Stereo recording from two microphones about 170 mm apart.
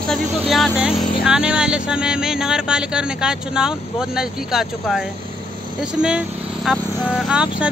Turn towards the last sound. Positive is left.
turn(degrees=-5)  # may be behind; listen again after turning